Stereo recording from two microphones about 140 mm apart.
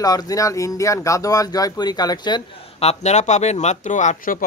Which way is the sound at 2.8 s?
50° left (ahead or behind).